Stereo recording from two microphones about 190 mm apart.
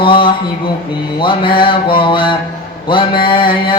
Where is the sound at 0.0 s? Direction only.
25° left (ahead or behind).